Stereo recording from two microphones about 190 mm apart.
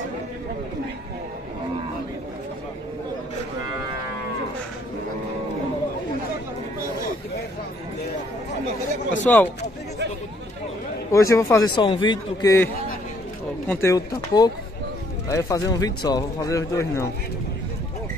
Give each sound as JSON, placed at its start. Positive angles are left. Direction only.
{"t": 9.2, "sound": "speech", "side_deg": 10}
{"t": 11.1, "sound": "speech", "side_deg": 15}
{"t": 13.7, "sound": "speech", "side_deg": 15}